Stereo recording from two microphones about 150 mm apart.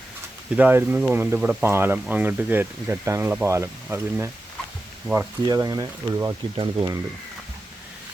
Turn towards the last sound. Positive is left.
turn(degrees=-30)  # may be behind; listen again after turning